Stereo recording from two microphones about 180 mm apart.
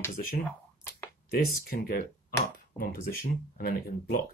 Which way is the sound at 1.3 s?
55° left (ahead or behind).